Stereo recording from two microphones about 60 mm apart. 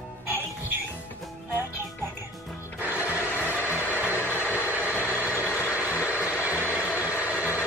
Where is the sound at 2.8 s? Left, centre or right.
Right.